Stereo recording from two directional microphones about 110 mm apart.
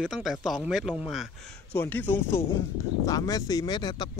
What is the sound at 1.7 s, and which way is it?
Speech, 20° left (ahead or behind).